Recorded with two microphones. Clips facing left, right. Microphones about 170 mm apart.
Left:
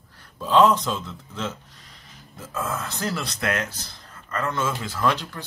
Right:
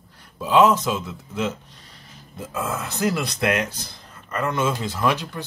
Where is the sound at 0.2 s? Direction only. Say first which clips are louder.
Right 1 dB; 10° right (ahead or behind).